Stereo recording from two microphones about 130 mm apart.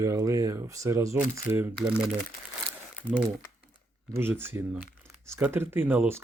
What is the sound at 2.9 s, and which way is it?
Crumpling, 10° right (ahead or behind).